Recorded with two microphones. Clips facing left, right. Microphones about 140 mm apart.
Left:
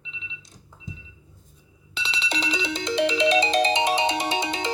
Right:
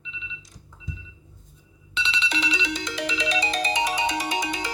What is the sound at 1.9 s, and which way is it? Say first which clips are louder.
Ringtone: right 1 dB; 40° left (ahead or behind).